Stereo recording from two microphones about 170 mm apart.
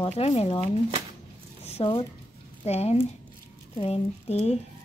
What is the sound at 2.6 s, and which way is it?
Speech, 40° left (ahead or behind).